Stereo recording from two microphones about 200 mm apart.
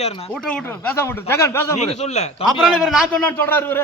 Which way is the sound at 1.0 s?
10° left (ahead or behind).